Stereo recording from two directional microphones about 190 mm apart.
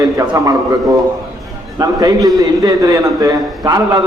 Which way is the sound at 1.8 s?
20° right (ahead or behind).